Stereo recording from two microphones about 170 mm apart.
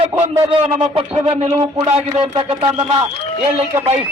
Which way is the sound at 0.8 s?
30° right (ahead or behind).